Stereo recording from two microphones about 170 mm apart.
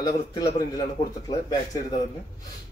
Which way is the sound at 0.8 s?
25° left (ahead or behind).